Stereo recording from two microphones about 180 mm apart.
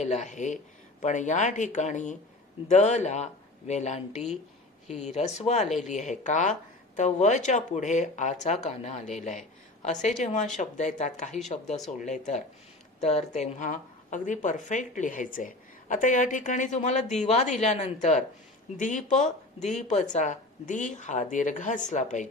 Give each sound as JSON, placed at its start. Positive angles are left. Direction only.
{"t": 0.0, "sound": "a woman's voice", "side_deg": 40}